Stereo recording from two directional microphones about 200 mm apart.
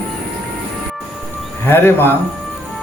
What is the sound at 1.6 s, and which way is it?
Speech, 10° left (ahead or behind).